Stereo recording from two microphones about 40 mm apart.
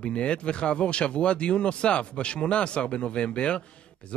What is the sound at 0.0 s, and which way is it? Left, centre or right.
Speech, left.